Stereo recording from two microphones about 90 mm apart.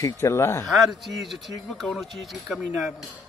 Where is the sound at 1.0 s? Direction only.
Centre (ahead or behind).